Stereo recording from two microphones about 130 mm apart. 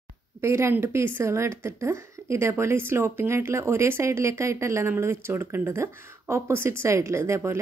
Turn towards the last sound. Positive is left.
turn(degrees=-20)  # may be behind; listen again after turning